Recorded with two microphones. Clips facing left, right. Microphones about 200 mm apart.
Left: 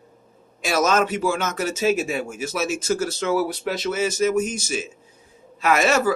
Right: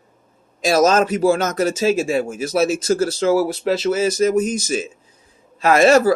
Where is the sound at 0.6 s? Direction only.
35° right (ahead or behind).